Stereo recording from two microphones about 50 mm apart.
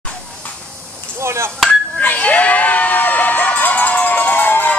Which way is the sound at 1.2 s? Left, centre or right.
Right.